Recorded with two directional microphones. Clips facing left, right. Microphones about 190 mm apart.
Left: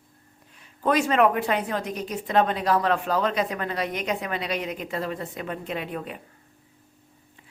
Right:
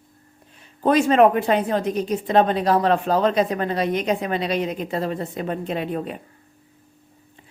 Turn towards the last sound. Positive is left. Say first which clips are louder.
# right 6 dB
turn(degrees=-35)  # may be behind; listen again after turning